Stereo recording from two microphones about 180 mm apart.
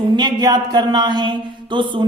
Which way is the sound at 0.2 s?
25° right (ahead or behind).